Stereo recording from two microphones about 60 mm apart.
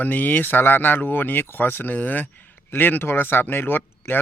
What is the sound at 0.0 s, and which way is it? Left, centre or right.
Speech, left.